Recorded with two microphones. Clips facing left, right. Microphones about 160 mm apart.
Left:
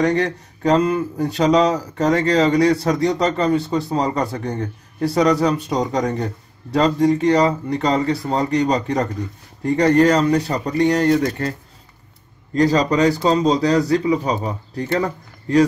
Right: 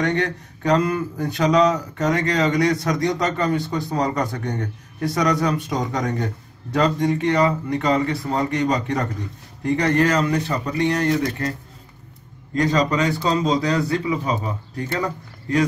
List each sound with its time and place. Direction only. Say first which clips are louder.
0.0 s speech: left 4 dB; 35° left (ahead or behind)
12.5 s speech: left 4 dB; 35° left (ahead or behind)